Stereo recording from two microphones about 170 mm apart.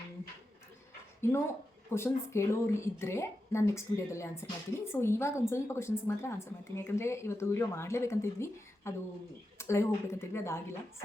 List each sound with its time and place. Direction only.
1.2 s a woman's voice: 15° left (ahead or behind)